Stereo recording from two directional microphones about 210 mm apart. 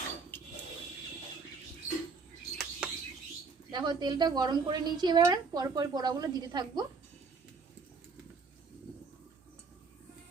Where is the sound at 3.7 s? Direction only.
20° right (ahead or behind).